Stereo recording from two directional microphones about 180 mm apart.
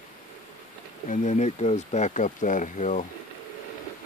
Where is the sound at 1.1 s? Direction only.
40° left (ahead or behind).